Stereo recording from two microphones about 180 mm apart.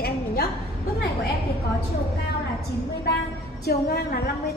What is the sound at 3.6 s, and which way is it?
Speech, 65° left (ahead or behind).